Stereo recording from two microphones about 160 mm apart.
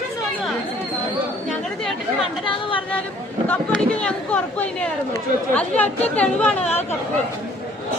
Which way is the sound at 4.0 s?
5° left (ahead or behind).